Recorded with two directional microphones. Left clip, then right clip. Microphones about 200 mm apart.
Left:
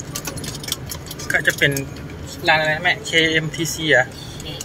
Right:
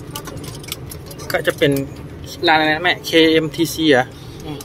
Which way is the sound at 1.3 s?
20° right (ahead or behind).